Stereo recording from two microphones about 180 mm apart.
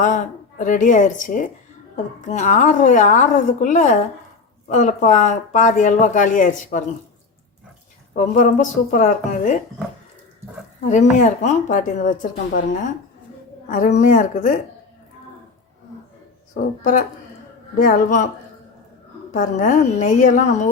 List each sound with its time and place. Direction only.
0.0 s speech: 45° left (ahead or behind)
8.1 s speech: 45° left (ahead or behind)
10.8 s speech: 40° left (ahead or behind)
13.7 s speech: 45° left (ahead or behind)
16.6 s speech: 45° left (ahead or behind)
19.3 s speech: 45° left (ahead or behind)